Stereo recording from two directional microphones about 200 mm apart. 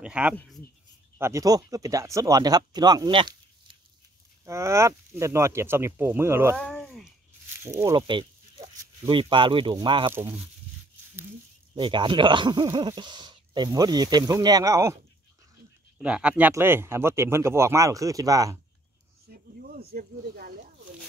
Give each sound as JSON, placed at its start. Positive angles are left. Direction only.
{"t": 0.0, "sound": "speech", "side_deg": -5}
{"t": 6.6, "sound": "a sound", "side_deg": 5}
{"t": 7.6, "sound": "speech", "side_deg": -15}
{"t": 10.1, "sound": "speech", "side_deg": -10}
{"t": 11.7, "sound": "speech", "side_deg": -25}
{"t": 19.7, "sound": "speech", "side_deg": -50}